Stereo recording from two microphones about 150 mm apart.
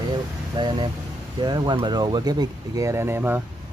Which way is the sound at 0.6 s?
30° right (ahead or behind).